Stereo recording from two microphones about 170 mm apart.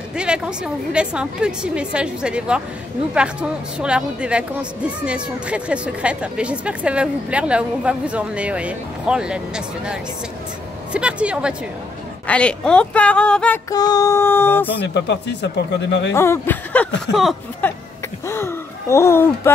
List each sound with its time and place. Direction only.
0.1 s a woman's voice: 5° right (ahead or behind)
10.9 s a woman's voice: 5° right (ahead or behind)
12.3 s a woman's voice: 5° left (ahead or behind)
13.7 s a woman's voice: 20° left (ahead or behind)
15.0 s speech: 90° left
16.1 s a woman's voice: 15° left (ahead or behind)
17.1 s a woman's voice: centre (ahead or behind)
18.2 s speech: 15° left (ahead or behind)